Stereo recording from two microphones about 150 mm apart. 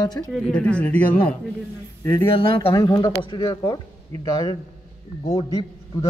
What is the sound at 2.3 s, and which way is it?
Speech, 35° left (ahead or behind).